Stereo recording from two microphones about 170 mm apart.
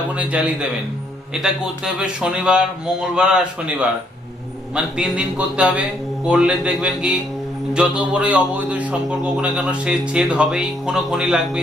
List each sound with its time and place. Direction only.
0.1 s a man's voice: 10° right (ahead or behind)
4.7 s a man's voice: 5° right (ahead or behind)